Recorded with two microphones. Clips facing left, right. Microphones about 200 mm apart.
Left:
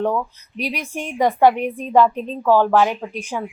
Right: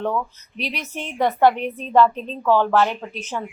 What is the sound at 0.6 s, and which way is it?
A woman's voice, 10° left (ahead or behind).